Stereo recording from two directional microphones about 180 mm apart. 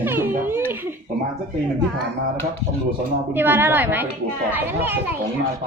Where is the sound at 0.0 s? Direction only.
10° right (ahead or behind).